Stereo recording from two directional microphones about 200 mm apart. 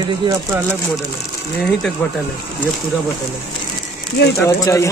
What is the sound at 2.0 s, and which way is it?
Speech, 5° left (ahead or behind).